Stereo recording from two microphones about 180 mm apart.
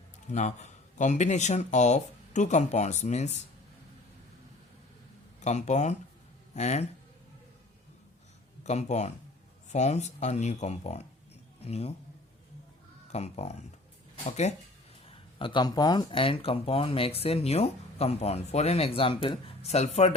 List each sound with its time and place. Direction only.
0.3 s speech: 40° left (ahead or behind)
5.4 s speech: 40° left (ahead or behind)
8.6 s speech: 40° left (ahead or behind)
13.1 s speech: 35° left (ahead or behind)